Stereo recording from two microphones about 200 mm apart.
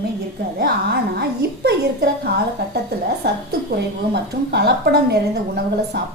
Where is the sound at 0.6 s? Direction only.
50° right (ahead or behind).